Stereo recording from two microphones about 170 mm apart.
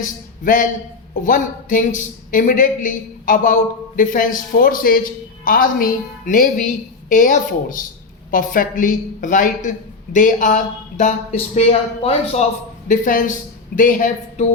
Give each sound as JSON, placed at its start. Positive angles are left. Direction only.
{"t": 0.0, "sound": "a woman's voice", "side_deg": 50}
{"t": 12.9, "sound": "a woman's voice", "side_deg": 50}